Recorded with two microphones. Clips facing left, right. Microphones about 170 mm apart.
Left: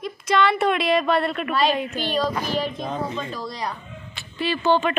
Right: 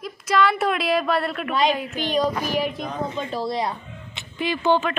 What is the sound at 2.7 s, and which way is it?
Speech, 20° left (ahead or behind).